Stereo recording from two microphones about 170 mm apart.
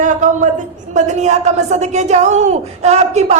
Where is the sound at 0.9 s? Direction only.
45° right (ahead or behind).